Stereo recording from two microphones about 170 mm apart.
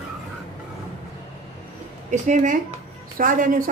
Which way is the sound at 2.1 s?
45° right (ahead or behind).